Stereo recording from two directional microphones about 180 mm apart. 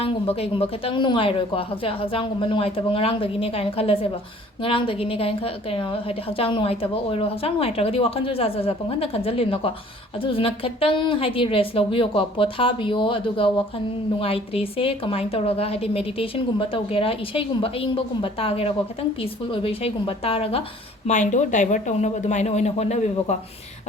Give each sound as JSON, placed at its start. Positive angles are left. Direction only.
{"t": 0.0, "sound": "a woman's voice", "side_deg": 35}
{"t": 21.1, "sound": "a woman's voice", "side_deg": 45}